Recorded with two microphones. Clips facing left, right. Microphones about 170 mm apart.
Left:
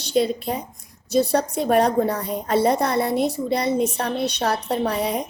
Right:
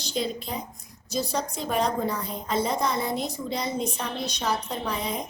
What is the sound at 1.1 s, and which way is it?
A woman's voice, 65° left (ahead or behind).